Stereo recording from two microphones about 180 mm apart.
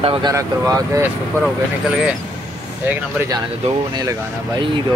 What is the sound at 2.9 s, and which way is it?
Speech, 10° right (ahead or behind).